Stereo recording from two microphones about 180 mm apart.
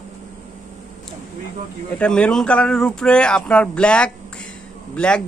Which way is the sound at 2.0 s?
5° left (ahead or behind).